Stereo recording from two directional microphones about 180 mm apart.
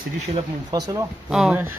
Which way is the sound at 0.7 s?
20° right (ahead or behind).